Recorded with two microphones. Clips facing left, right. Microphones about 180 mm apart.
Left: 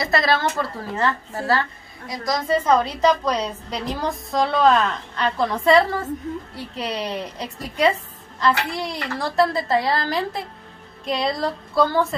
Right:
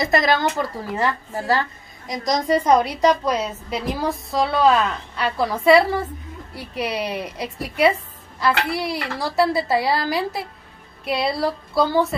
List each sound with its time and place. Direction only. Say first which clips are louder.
0.0 s a woman's voice: right 2 dB; 20° right (ahead or behind)